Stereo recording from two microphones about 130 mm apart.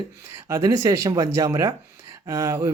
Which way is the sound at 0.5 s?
25° right (ahead or behind).